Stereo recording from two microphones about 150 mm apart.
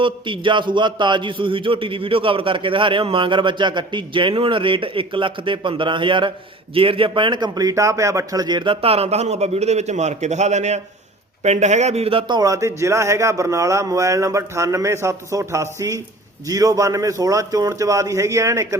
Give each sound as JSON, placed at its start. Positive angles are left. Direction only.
{"t": 0.0, "sound": "a man's voice", "side_deg": -35}
{"t": 12.4, "sound": "speech", "side_deg": -20}